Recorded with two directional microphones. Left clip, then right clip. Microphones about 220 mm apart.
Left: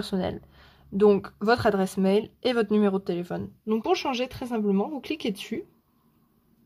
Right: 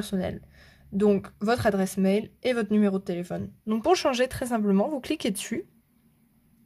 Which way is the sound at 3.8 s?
30° right (ahead or behind).